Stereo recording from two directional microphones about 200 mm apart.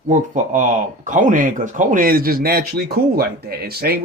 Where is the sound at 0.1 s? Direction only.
40° right (ahead or behind).